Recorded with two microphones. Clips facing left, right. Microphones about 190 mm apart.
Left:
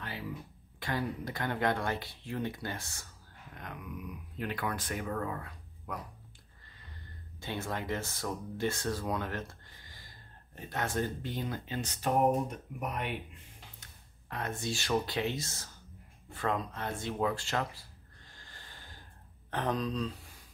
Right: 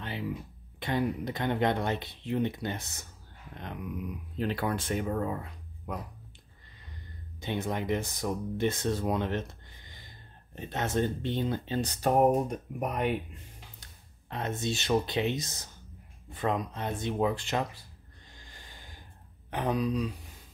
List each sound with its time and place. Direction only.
0.7 s speech: 20° right (ahead or behind)
7.3 s speech: 20° right (ahead or behind); by 13.1 s 45° right (ahead or behind)
14.3 s speech: 20° right (ahead or behind)
18.4 s snort: 15° right (ahead or behind)
19.5 s speech: 10° right (ahead or behind)